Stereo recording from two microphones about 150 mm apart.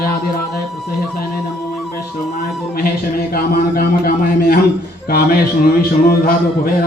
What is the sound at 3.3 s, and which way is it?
A man's voice, 80° left.